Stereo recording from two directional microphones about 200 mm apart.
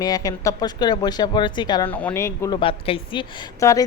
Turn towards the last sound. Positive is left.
turn(degrees=15)  # may be behind; listen again after turning